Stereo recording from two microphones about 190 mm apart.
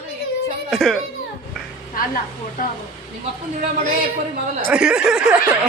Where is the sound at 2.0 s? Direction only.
45° left (ahead or behind).